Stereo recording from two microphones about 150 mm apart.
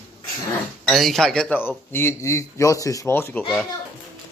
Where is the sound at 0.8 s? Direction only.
Centre (ahead or behind).